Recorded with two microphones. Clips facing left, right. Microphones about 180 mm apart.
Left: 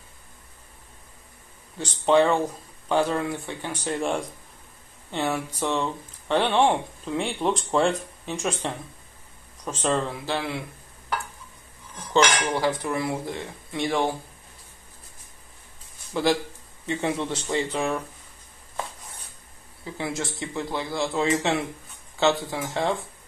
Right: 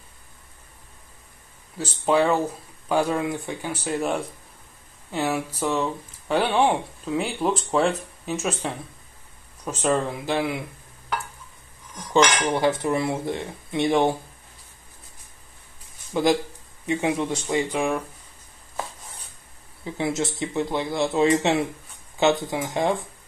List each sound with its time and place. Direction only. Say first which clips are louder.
1.8 s speech: left 1 dB; 5° right (ahead or behind)
12.4 s speech: right 3 dB; 20° right (ahead or behind)
16.1 s speech: right 2 dB; 15° right (ahead or behind)
19.8 s speech: right 5 dB; 20° right (ahead or behind)